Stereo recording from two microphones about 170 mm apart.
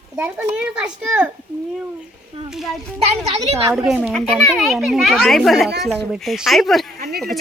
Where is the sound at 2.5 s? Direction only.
Centre (ahead or behind).